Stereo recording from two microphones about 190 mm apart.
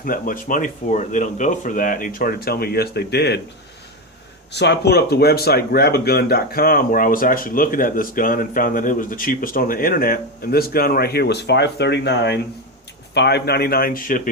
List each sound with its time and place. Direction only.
0.0 s speech: 45° left (ahead or behind)
4.5 s speech: 65° left (ahead or behind)